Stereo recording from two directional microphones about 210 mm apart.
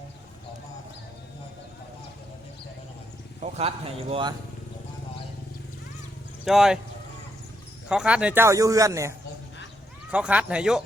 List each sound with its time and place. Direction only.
4.1 s speech: 20° right (ahead or behind)
6.4 s speech: centre (ahead or behind)
7.9 s a man's voice: 5° right (ahead or behind)